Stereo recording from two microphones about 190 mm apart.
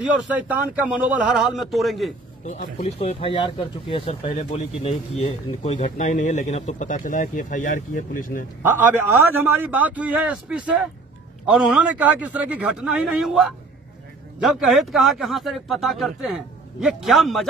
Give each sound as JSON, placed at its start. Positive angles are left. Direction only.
{"t": 0.0, "sound": "a man's voice", "side_deg": -5}
{"t": 2.4, "sound": "speech", "side_deg": 40}
{"t": 8.6, "sound": "a man's voice", "side_deg": -10}